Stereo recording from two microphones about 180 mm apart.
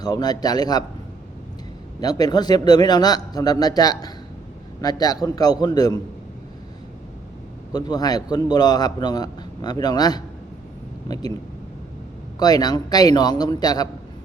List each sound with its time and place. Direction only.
0.0 s a man's voice: 20° left (ahead or behind)
2.0 s a man's voice: 20° left (ahead or behind)
7.7 s a man's voice: 20° left (ahead or behind)
12.4 s a man's voice: 20° left (ahead or behind)